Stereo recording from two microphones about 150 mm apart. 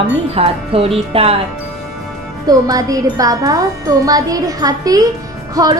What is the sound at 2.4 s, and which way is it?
Wind chime, 25° right (ahead or behind).